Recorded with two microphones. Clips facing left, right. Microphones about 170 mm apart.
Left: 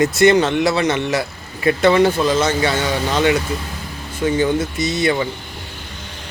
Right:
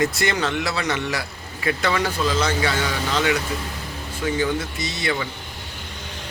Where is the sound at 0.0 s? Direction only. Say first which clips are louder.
Left 9 dB; 20° left (ahead or behind).